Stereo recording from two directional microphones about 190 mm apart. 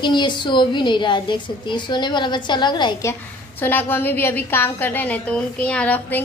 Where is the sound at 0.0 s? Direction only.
25° left (ahead or behind).